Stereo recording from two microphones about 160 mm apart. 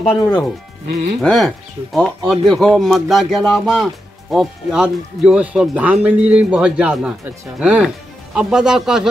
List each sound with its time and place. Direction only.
0.2 s speech: 25° left (ahead or behind)
1.2 s speech: centre (ahead or behind)